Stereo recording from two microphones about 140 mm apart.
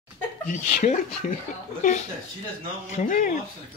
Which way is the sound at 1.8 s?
60° left (ahead or behind).